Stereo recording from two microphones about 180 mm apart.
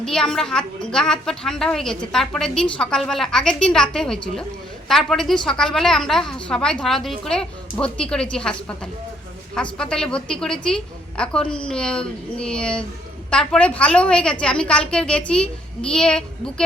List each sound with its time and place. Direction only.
0.0 s a woman's voice: 5° left (ahead or behind)
9.6 s a woman's voice: 5° left (ahead or behind)